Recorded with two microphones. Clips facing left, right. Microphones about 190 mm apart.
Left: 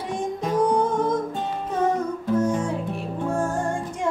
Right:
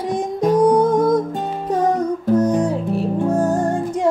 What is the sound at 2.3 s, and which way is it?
Music, 40° right (ahead or behind).